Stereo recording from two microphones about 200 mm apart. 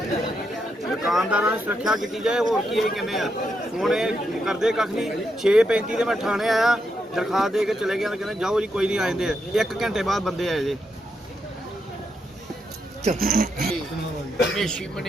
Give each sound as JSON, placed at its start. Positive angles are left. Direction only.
{"t": 1.0, "sound": "speech", "side_deg": 0}
{"t": 13.1, "sound": "speech", "side_deg": -45}
{"t": 14.5, "sound": "speech", "side_deg": 5}